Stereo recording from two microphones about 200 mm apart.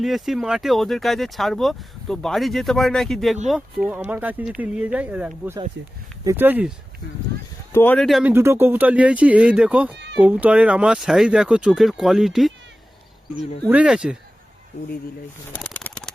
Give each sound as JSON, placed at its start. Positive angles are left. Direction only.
{"t": 0.0, "sound": "speech", "side_deg": 0}
{"t": 5.8, "sound": "speech", "side_deg": -65}
{"t": 6.2, "sound": "speech", "side_deg": -10}
{"t": 7.7, "sound": "speech", "side_deg": 10}
{"t": 8.3, "sound": "speech", "side_deg": -10}
{"t": 13.7, "sound": "speech", "side_deg": -5}
{"t": 15.5, "sound": "a sound", "side_deg": 5}